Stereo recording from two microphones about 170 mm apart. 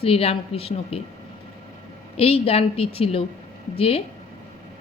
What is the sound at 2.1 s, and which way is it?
A woman's voice, 35° left (ahead or behind).